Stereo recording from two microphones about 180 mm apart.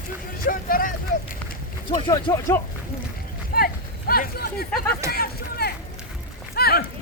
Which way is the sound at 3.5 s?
55° left (ahead or behind).